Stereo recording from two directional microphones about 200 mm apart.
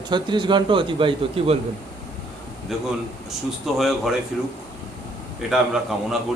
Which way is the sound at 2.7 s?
Centre (ahead or behind).